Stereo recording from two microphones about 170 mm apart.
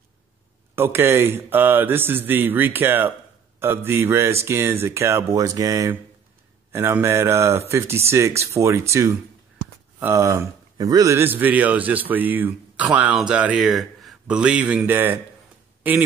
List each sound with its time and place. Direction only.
0.7 s a man's voice: 15° right (ahead or behind)